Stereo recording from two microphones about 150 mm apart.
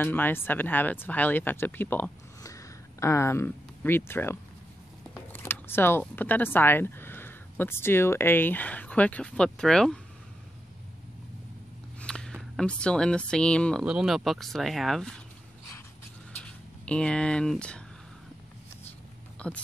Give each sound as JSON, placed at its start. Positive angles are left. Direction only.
{"t": 0.0, "sound": "speech", "side_deg": 15}
{"t": 12.0, "sound": "speech", "side_deg": 5}
{"t": 16.4, "sound": "speech", "side_deg": 5}
{"t": 19.3, "sound": "a sound", "side_deg": 10}